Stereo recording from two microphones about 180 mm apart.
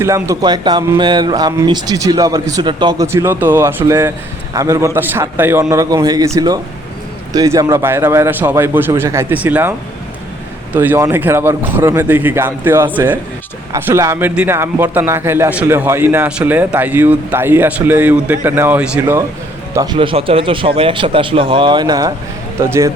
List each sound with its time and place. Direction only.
0.0 s a man's voice: 15° right (ahead or behind)
10.8 s a man's voice: 15° right (ahead or behind)